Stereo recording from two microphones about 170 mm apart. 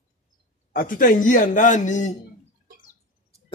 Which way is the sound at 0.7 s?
55° left (ahead or behind).